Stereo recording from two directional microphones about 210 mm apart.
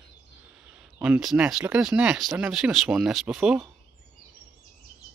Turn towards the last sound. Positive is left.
turn(degrees=-5)  # may be behind; listen again after turning